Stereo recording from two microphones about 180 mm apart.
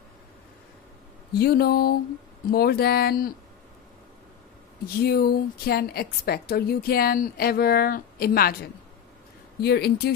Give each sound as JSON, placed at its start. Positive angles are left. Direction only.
{"t": 1.3, "sound": "a woman's voice", "side_deg": 60}
{"t": 5.0, "sound": "a woman's voice", "side_deg": 60}
{"t": 9.6, "sound": "a woman's voice", "side_deg": 65}